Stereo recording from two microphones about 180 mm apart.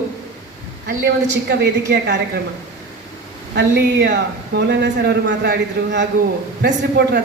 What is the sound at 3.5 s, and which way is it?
A man's voice, 70° right (ahead or behind).